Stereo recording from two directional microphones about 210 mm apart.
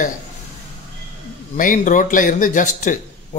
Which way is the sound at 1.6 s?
40° left (ahead or behind).